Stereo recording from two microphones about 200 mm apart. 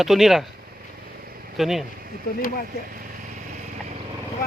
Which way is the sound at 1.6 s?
Centre (ahead or behind).